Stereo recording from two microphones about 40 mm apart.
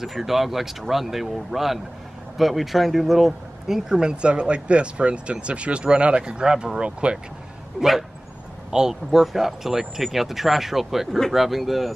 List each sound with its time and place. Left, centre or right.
0.0 s speech: centre; by 7.2 s right
8.6 s a sound: centre
9.1 s speech: centre